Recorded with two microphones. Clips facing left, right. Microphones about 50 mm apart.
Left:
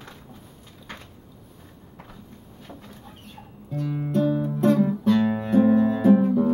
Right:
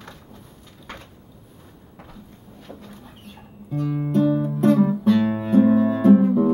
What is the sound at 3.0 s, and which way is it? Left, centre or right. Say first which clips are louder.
Music: right 1 dB; centre.